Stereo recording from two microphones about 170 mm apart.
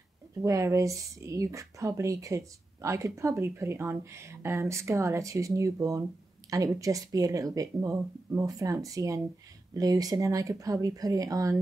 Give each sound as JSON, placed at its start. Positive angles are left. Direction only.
{"t": 0.4, "sound": "speech", "side_deg": -20}